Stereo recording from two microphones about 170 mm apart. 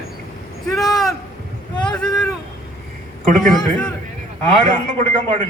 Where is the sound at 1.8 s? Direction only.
5° left (ahead or behind).